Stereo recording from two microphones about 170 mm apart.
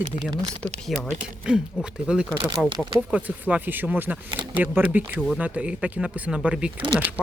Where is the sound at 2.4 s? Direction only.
25° right (ahead or behind).